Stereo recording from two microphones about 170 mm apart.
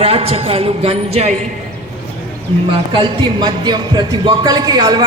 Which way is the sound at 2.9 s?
25° right (ahead or behind).